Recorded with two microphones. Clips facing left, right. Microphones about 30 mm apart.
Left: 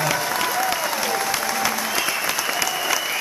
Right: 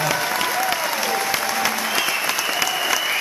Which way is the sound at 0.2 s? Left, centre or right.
Centre.